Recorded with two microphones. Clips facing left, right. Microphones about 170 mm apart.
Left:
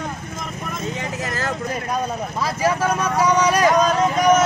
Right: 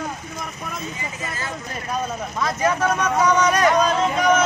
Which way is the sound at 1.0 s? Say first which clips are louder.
Left 5 dB; 70° left (ahead or behind).